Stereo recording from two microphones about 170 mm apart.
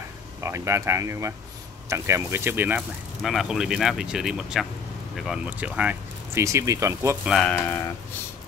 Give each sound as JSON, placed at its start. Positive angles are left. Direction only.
{"t": 0.4, "sound": "speech", "side_deg": -15}
{"t": 3.2, "sound": "speech", "side_deg": 0}
{"t": 7.2, "sound": "speech", "side_deg": 0}